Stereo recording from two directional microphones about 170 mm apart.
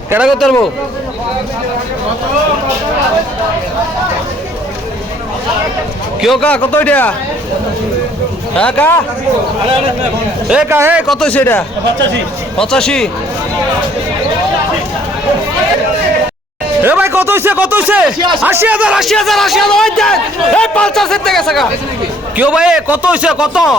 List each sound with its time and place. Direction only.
0.1 s a man's voice: 5° right (ahead or behind)
6.2 s a man's voice: 5° left (ahead or behind)
8.5 s a man's voice: 5° left (ahead or behind)
10.5 s speech: 10° right (ahead or behind)
11.1 s a man's voice: 5° left (ahead or behind)
16.8 s a man's voice: 15° right (ahead or behind)